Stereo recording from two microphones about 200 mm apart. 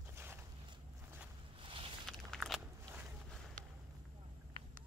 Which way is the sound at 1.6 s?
25° right (ahead or behind).